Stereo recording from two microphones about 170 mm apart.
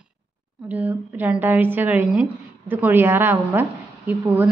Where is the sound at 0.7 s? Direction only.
10° right (ahead or behind).